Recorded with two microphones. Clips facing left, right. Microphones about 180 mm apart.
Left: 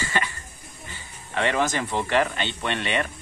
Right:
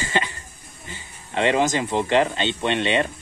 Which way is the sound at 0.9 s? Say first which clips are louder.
Right 3 dB; 20° right (ahead or behind).